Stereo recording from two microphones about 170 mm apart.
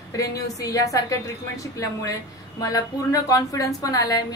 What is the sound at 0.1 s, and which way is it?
A woman's voice, 20° left (ahead or behind).